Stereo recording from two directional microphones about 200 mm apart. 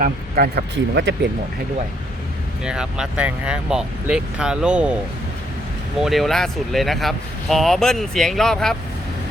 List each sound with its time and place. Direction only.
0.0 s speech: 50° right (ahead or behind)
2.6 s speech: 5° right (ahead or behind)
6.0 s speech: centre (ahead or behind)